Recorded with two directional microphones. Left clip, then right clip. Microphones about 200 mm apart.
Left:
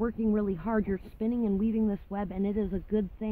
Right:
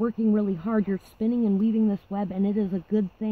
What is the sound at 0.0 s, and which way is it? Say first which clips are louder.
Speech: right 4 dB; 10° right (ahead or behind).